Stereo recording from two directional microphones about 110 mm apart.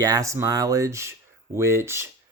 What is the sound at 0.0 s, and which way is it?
Speech, 35° right (ahead or behind).